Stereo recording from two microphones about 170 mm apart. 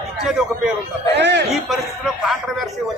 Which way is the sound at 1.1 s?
90° right.